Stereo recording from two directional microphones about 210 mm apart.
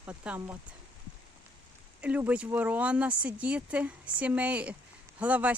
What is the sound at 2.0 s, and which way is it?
Speech, 5° right (ahead or behind).